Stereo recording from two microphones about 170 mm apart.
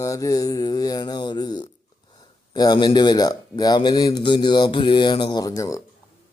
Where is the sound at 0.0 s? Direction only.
20° left (ahead or behind).